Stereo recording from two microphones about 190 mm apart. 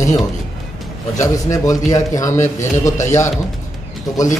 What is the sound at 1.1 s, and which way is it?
Speech, 15° left (ahead or behind).